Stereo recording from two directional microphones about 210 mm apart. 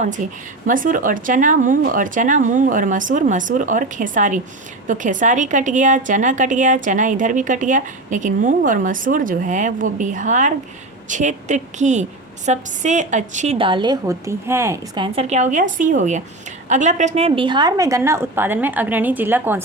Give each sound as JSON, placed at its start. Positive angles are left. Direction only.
{"t": 0.2, "sound": "a woman's voice", "side_deg": -40}